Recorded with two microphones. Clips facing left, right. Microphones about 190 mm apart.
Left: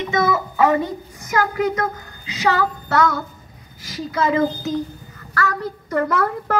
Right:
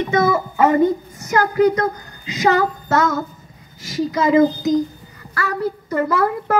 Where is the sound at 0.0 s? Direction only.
35° right (ahead or behind).